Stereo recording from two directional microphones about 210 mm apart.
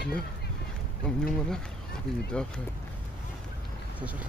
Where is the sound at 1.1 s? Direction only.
Centre (ahead or behind).